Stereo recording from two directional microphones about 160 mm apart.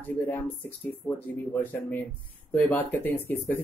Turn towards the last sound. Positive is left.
turn(degrees=10)  # may be behind; listen again after turning